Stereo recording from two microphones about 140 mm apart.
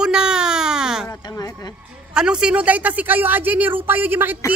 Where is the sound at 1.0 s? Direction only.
25° left (ahead or behind).